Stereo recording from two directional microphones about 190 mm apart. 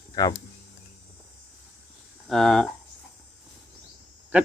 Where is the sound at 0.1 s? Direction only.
20° left (ahead or behind).